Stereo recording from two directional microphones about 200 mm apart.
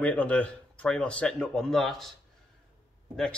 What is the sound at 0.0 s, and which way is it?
Speech, 5° left (ahead or behind).